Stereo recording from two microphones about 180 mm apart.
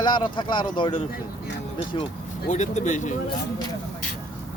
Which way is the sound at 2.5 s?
40° left (ahead or behind).